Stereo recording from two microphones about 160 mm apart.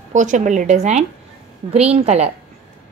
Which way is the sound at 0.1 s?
50° right (ahead or behind).